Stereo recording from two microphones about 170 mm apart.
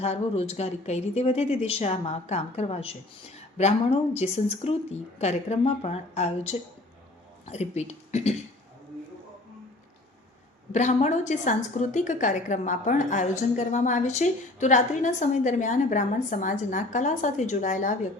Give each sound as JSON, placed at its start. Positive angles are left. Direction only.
{"t": 0.0, "sound": "a woman's voice", "side_deg": 40}
{"t": 7.8, "sound": "a woman's voice", "side_deg": 40}
{"t": 10.7, "sound": "a woman's voice", "side_deg": 45}